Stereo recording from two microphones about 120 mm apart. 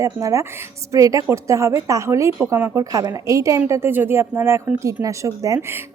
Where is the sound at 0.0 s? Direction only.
30° right (ahead or behind).